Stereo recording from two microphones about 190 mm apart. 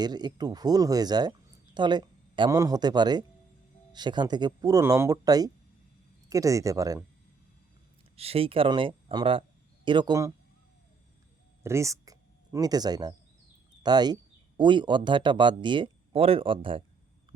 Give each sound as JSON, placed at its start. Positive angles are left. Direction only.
{"t": 0.0, "sound": "a man's voice", "side_deg": -20}
{"t": 8.1, "sound": "speech", "side_deg": -30}
{"t": 11.6, "sound": "speech", "side_deg": -15}